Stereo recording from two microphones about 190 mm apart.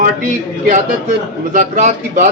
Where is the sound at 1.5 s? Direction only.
40° right (ahead or behind).